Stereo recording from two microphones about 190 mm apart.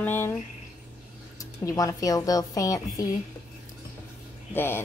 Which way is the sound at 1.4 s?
20° left (ahead or behind).